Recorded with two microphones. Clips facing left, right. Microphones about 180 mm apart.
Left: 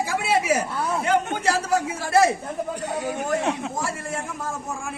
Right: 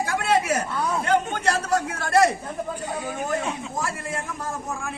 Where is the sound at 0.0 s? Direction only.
5° left (ahead or behind).